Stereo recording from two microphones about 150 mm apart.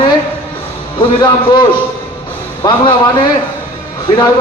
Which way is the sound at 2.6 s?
35° left (ahead or behind).